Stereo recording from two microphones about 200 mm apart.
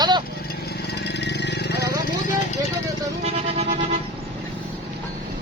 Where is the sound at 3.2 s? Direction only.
30° right (ahead or behind).